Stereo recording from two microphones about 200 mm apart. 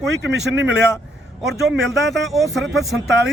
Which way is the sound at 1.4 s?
Centre (ahead or behind).